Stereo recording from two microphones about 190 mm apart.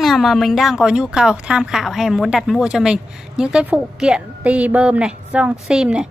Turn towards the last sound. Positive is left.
turn(degrees=-5)  # may be behind; listen again after turning